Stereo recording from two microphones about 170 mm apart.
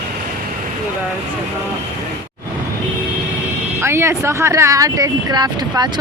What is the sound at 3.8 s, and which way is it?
Speech, 15° right (ahead or behind).